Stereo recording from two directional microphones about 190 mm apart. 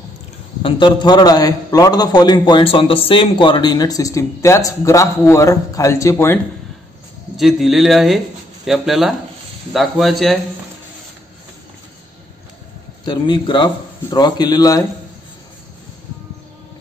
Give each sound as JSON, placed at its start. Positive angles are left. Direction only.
{"t": 0.6, "sound": "a man's voice", "side_deg": 25}
{"t": 7.3, "sound": "speech", "side_deg": 0}
{"t": 13.0, "sound": "a man's voice", "side_deg": 25}